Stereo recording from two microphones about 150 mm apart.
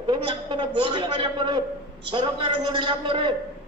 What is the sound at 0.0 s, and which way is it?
A man's voice, 30° right (ahead or behind).